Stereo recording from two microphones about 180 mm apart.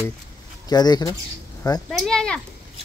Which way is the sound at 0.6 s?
20° left (ahead or behind).